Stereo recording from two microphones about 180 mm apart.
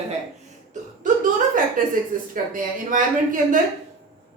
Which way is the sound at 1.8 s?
50° right (ahead or behind).